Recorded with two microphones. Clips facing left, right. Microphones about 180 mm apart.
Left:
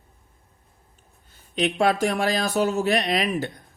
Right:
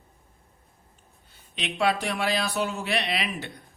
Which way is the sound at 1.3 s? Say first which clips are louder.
Left 10 dB; 45° left (ahead or behind).